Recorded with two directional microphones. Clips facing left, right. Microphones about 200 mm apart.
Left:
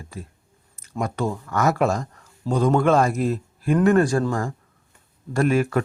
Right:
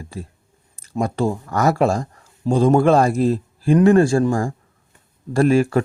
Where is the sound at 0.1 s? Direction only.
30° right (ahead or behind).